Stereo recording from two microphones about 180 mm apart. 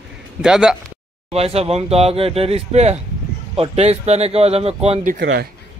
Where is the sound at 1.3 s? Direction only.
35° right (ahead or behind).